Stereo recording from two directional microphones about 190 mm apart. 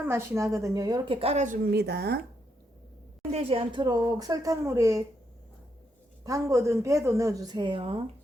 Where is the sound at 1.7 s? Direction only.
60° right (ahead or behind).